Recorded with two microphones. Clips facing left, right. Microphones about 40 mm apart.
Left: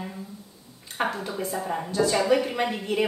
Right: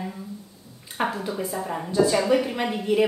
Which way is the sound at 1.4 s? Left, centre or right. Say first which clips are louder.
Even; centre.